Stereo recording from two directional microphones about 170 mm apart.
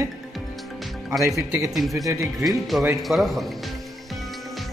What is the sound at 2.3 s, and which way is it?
A man's voice, centre (ahead or behind).